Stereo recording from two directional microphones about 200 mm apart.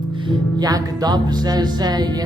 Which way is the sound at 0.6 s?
20° right (ahead or behind).